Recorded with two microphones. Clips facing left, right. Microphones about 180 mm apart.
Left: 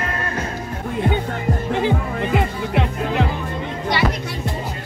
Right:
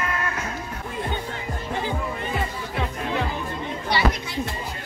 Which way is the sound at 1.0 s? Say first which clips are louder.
Left 8 dB; 55° left (ahead or behind).